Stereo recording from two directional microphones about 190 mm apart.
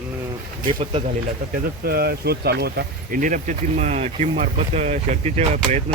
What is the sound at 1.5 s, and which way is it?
Speech, 55° right (ahead or behind).